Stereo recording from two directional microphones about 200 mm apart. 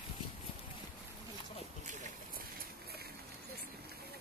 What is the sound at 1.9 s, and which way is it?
Boat, 45° right (ahead or behind).